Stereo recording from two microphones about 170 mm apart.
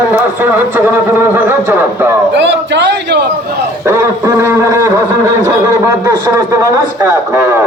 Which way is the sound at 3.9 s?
15° right (ahead or behind).